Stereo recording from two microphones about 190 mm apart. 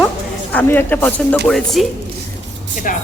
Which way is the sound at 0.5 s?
10° left (ahead or behind).